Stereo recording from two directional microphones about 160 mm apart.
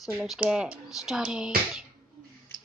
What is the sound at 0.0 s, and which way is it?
Speech, 5° right (ahead or behind).